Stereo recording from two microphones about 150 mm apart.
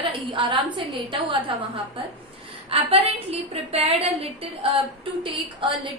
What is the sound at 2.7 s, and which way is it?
A woman's voice, 40° right (ahead or behind).